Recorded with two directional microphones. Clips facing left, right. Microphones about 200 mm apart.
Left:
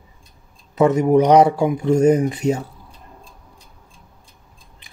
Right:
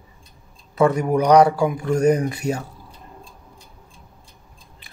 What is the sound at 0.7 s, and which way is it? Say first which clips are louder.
Speech: left 4 dB; 20° left (ahead or behind).